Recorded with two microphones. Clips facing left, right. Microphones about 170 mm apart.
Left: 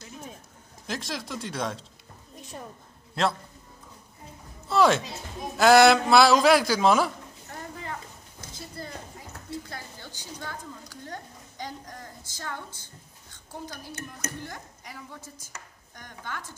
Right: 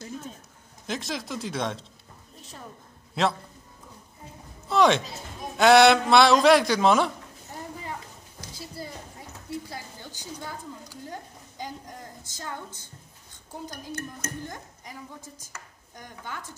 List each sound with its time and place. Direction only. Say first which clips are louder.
0.8 s a man's voice: right 2 dB; centre (ahead or behind)
3.2 s a man's voice: right 1 dB; centre (ahead or behind)
4.6 s a man's voice: right 1 dB; 5° left (ahead or behind)
9.7 s a sound: right 1 dB; 10° right (ahead or behind)
12.3 s a woman's voice: even; 15° right (ahead or behind)
16.0 s a woman's voice: even; 15° right (ahead or behind)